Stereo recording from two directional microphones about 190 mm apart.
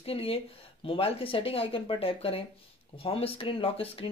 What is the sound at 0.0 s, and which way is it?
Speech, 30° left (ahead or behind).